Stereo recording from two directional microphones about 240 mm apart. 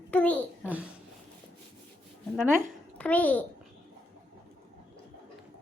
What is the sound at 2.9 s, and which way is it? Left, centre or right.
Speech, centre.